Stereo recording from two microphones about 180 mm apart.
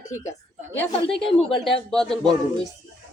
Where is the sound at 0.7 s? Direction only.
10° left (ahead or behind).